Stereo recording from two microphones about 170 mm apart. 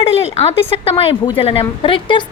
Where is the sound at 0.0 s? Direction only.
40° left (ahead or behind).